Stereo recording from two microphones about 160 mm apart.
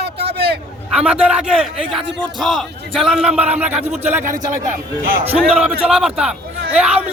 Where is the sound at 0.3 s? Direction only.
80° right.